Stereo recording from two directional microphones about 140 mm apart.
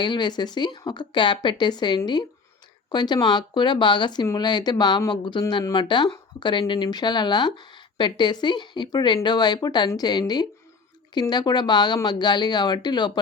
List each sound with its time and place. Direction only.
0.0 s speech: 35° left (ahead or behind)